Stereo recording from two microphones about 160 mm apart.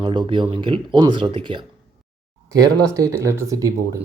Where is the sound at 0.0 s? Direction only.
30° right (ahead or behind).